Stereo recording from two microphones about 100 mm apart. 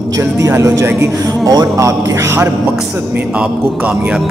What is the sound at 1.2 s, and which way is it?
Speech, 40° right (ahead or behind).